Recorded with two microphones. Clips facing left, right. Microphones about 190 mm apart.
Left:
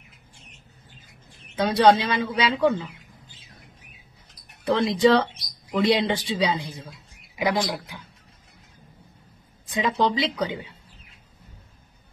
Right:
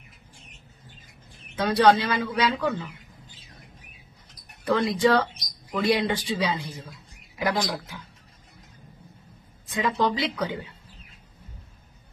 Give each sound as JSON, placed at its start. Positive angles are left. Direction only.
{"t": 1.6, "sound": "speech", "side_deg": 20}
{"t": 4.6, "sound": "speech", "side_deg": 25}
{"t": 9.7, "sound": "speech", "side_deg": 20}